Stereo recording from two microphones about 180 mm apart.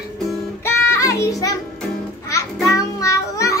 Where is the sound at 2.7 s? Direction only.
20° left (ahead or behind).